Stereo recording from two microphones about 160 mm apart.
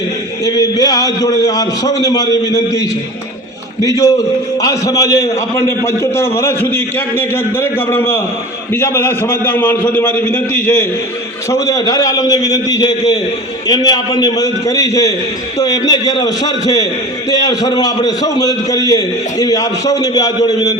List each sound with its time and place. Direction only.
0.4 s a man's voice: 25° left (ahead or behind)